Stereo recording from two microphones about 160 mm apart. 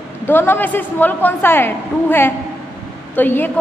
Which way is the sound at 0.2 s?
15° left (ahead or behind).